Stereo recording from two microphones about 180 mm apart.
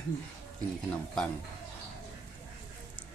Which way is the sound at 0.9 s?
5° left (ahead or behind).